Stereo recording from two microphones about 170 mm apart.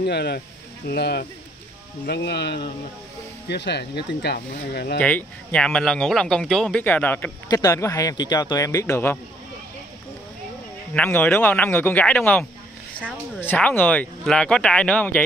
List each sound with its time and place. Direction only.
0.0 s speech: 70° left (ahead or behind)
5.0 s a man's voice: 10° left (ahead or behind)
11.0 s speech: 10° left (ahead or behind)
13.5 s speech: 10° left (ahead or behind)